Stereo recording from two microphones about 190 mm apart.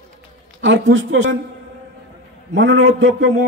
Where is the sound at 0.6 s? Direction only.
80° right.